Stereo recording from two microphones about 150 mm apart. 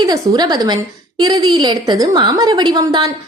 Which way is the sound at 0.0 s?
25° right (ahead or behind).